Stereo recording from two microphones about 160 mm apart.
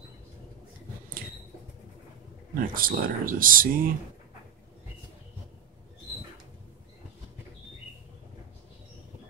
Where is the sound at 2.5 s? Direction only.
65° right (ahead or behind).